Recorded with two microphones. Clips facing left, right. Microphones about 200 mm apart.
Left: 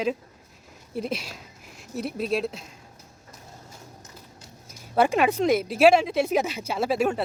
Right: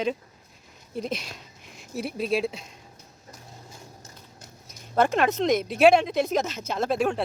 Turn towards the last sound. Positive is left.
turn(degrees=5)  # may be behind; listen again after turning